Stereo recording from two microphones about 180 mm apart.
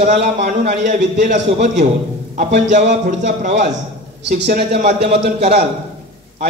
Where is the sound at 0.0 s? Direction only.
45° right (ahead or behind).